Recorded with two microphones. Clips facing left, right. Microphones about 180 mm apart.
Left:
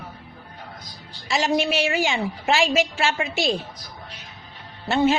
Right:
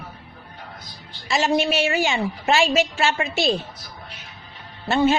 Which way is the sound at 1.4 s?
10° left (ahead or behind).